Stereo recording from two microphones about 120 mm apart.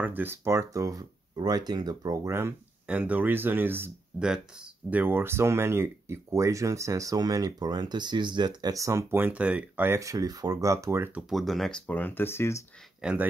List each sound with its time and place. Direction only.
0.0 s speech: 15° right (ahead or behind)
2.9 s speech: 15° right (ahead or behind)
11.2 s speech: centre (ahead or behind)
11.9 s speech: 15° left (ahead or behind)
13.0 s speech: 10° right (ahead or behind)